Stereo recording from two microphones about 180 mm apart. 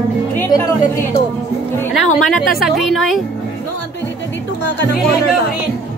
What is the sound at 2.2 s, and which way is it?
A woman's voice, centre (ahead or behind).